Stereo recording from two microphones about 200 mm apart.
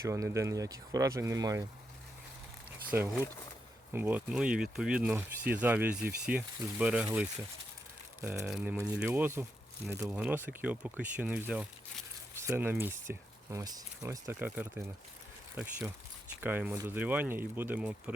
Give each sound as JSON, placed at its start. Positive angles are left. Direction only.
{"t": 0.0, "sound": "speech", "side_deg": -15}
{"t": 2.6, "sound": "a sound", "side_deg": -10}
{"t": 3.9, "sound": "speech", "side_deg": -5}